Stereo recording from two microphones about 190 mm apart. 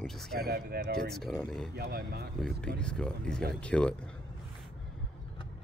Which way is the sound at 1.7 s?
55° right (ahead or behind).